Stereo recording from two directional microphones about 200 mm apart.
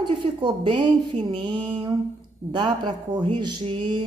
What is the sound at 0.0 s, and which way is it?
Speech, 25° right (ahead or behind).